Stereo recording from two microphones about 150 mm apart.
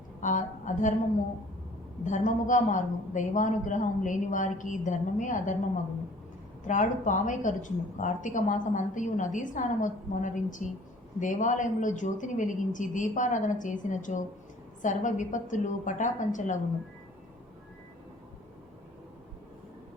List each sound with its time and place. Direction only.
0.2 s a woman's voice: 55° left (ahead or behind)
2.0 s a woman's voice: 55° left (ahead or behind)
6.7 s a woman's voice: 55° left (ahead or behind)